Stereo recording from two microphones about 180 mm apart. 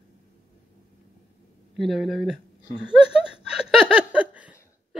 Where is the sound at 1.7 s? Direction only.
Centre (ahead or behind).